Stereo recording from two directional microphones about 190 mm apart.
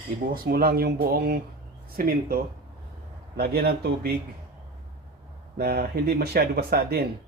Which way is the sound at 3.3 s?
55° right (ahead or behind).